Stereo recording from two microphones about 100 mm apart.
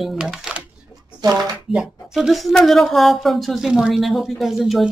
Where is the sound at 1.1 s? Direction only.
40° right (ahead or behind).